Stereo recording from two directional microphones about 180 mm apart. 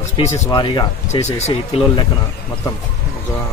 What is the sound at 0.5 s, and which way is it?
Speech, 25° left (ahead or behind).